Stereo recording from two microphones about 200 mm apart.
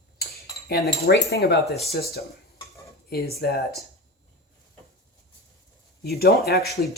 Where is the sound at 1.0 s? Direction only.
50° left (ahead or behind).